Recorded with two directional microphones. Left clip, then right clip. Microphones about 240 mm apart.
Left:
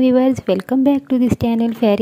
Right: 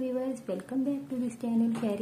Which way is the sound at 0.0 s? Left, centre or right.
Left.